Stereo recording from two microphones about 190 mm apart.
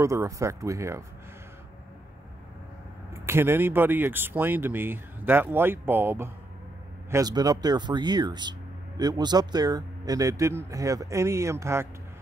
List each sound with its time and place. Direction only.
0.0 s speech: 15° right (ahead or behind)
3.3 s speech: 10° right (ahead or behind)